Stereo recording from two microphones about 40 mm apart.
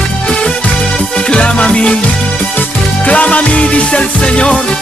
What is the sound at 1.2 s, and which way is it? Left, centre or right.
Music, left.